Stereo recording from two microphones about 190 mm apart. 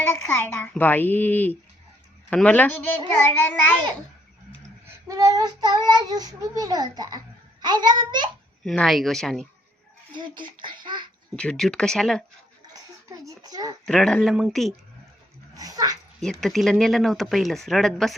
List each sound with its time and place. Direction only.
0.2 s a child's voice: 10° left (ahead or behind)
4.9 s child singing: 15° right (ahead or behind)
8.6 s speech: centre (ahead or behind)
10.2 s child singing: 25° right (ahead or behind)
11.3 s speech: 5° left (ahead or behind)
12.7 s a child's voice: 15° right (ahead or behind)
13.8 s speech: 5° left (ahead or behind)
15.5 s speech: 20° right (ahead or behind)
16.2 s speech: centre (ahead or behind)